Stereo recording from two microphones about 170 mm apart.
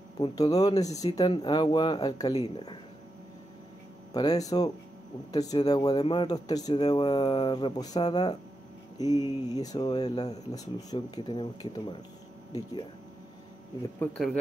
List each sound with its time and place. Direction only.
0.2 s speech: 20° left (ahead or behind)
4.1 s speech: 25° left (ahead or behind)
13.9 s speech: 5° left (ahead or behind)